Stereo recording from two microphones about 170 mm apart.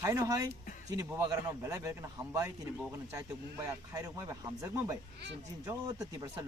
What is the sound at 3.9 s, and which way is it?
A man's voice, 20° right (ahead or behind).